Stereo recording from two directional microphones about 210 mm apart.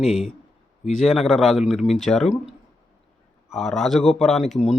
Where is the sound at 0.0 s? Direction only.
Centre (ahead or behind).